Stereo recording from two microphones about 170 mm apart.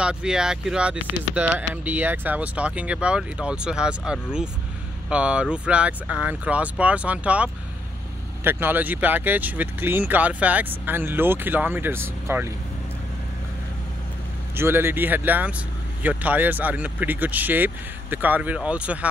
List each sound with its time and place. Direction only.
0.0 s speech: 5° right (ahead or behind)
14.5 s speech: 15° right (ahead or behind)